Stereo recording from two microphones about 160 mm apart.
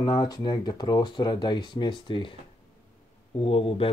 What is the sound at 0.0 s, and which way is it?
Speech, 25° left (ahead or behind).